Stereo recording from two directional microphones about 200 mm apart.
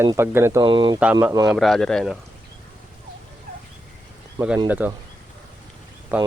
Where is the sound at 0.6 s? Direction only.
25° right (ahead or behind).